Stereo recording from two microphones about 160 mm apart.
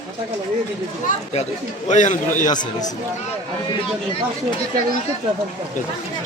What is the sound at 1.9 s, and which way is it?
Speech, 50° left (ahead or behind).